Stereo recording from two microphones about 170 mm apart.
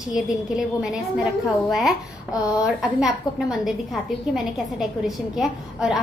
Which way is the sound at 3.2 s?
25° left (ahead or behind).